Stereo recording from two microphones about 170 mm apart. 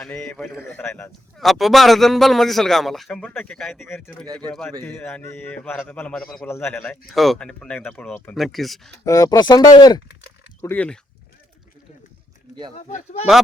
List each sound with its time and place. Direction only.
0.0 s a man's voice: 5° left (ahead or behind)
1.4 s a man's voice: centre (ahead or behind)
7.1 s a man's voice: centre (ahead or behind)
9.0 s speech: 20° left (ahead or behind)
10.6 s a man's voice: 10° left (ahead or behind)
12.7 s speech: 40° left (ahead or behind)